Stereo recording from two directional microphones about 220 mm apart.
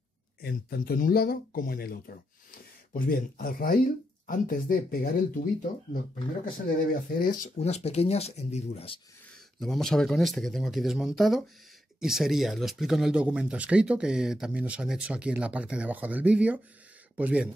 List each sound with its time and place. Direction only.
0.4 s speech: 45° left (ahead or behind)
6.9 s speech: 40° left (ahead or behind)
9.6 s speech: centre (ahead or behind)